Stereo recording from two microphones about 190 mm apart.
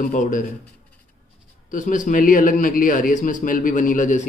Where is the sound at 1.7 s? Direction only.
45° left (ahead or behind).